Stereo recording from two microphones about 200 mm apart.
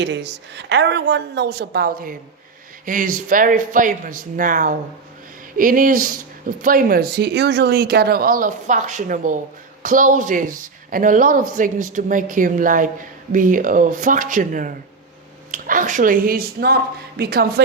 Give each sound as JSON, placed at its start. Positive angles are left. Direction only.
{"t": 0.0, "sound": "a woman's voice", "side_deg": -60}